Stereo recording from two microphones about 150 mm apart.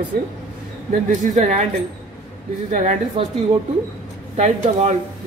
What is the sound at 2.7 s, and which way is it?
Speech, 50° right (ahead or behind).